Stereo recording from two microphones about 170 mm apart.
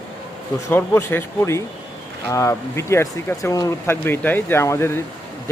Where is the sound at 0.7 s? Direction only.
15° left (ahead or behind).